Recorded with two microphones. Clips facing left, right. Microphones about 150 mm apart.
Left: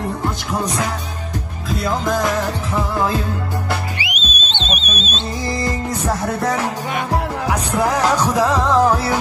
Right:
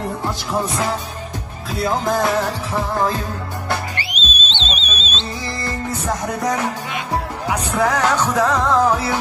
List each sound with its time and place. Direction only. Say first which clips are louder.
3.9 s music: left 1 dB; 10° left (ahead or behind)
4.2 s music: even; 50° left (ahead or behind)
4.5 s alarm: left 5 dB; 10° left (ahead or behind)
5.0 s music: left 4 dB; 10° left (ahead or behind)